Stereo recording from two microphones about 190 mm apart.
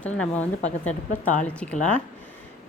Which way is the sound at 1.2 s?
40° left (ahead or behind).